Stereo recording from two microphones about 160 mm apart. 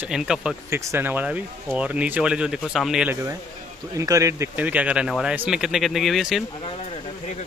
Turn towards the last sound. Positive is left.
turn(degrees=40)  # may be behind; listen again after turning